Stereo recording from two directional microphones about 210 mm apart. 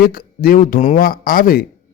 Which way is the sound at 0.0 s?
45° left (ahead or behind).